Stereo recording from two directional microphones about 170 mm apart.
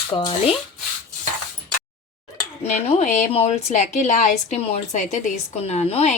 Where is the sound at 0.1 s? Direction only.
30° left (ahead or behind).